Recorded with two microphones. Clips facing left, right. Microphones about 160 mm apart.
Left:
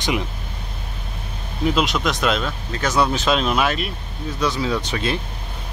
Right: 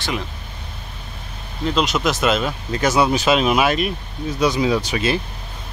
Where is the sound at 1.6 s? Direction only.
Centre (ahead or behind).